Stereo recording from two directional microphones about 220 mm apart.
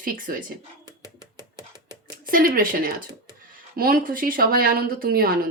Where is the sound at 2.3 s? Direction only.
40° right (ahead or behind).